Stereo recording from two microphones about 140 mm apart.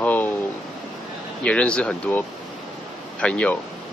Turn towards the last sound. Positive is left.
turn(degrees=10)  # may be behind; listen again after turning